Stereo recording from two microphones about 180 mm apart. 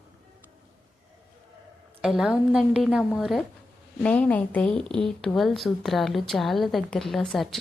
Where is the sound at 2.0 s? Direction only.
5° right (ahead or behind).